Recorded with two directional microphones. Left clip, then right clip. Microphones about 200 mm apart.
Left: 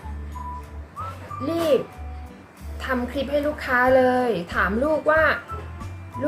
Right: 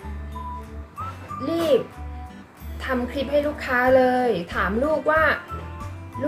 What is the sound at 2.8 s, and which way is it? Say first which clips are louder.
A woman's voice: even; centre (ahead or behind).